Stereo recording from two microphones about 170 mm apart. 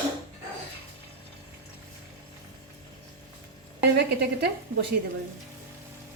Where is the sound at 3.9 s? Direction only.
75° right (ahead or behind).